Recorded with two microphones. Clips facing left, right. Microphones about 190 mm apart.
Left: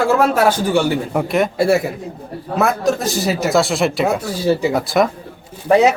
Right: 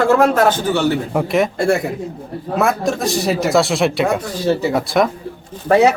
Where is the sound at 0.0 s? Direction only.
10° left (ahead or behind).